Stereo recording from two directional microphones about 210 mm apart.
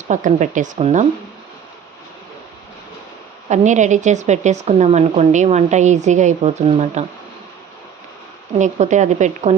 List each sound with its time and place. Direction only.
0.1 s a woman's voice: 35° right (ahead or behind)
3.5 s a woman's voice: 35° right (ahead or behind)
8.5 s a woman's voice: 35° right (ahead or behind)